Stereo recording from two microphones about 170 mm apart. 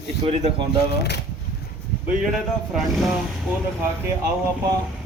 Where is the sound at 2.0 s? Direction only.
Centre (ahead or behind).